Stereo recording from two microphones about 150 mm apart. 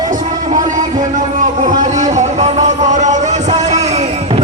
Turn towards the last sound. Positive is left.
turn(degrees=-50)  # may be behind; listen again after turning